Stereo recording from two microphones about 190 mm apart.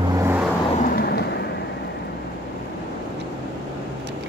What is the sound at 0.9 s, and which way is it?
Vehicle, 55° left (ahead or behind).